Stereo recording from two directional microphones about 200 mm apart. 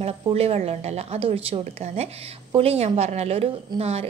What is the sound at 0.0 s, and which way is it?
A woman's voice, 30° right (ahead or behind).